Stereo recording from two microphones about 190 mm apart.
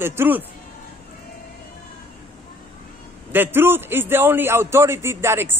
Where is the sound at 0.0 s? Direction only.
10° right (ahead or behind).